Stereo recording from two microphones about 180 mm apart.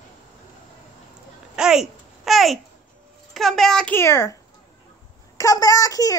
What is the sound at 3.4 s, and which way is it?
A child's voice, centre (ahead or behind).